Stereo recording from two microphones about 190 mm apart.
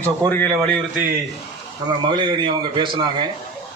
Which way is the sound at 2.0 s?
25° right (ahead or behind).